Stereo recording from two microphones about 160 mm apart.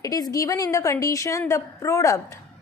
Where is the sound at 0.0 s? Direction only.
20° left (ahead or behind).